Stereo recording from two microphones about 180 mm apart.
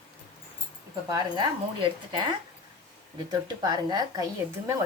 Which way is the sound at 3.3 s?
25° right (ahead or behind).